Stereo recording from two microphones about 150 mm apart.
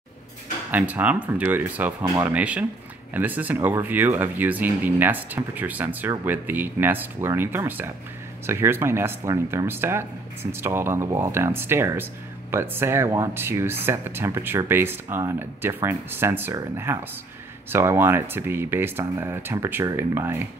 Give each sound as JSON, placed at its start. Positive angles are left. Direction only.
{"t": 0.7, "sound": "speech", "side_deg": -10}